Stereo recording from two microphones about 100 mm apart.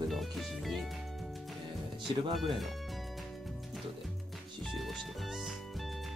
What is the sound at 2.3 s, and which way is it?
Speech, centre (ahead or behind).